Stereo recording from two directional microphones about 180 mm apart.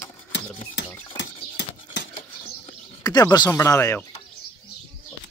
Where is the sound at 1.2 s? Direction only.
80° left.